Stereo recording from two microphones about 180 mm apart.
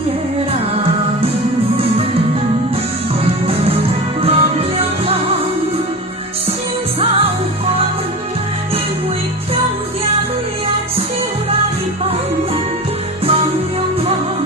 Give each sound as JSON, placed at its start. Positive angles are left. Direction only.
{"t": 1.7, "sound": "music", "side_deg": -30}
{"t": 3.4, "sound": "music", "side_deg": -35}